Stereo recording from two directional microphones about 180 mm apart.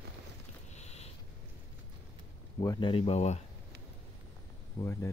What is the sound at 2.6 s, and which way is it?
Speech, 25° left (ahead or behind).